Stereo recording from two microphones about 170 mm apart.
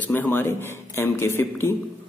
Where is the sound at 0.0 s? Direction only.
10° left (ahead or behind).